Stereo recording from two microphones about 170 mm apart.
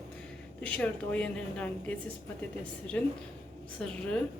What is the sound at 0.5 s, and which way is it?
A woman's voice, 5° left (ahead or behind).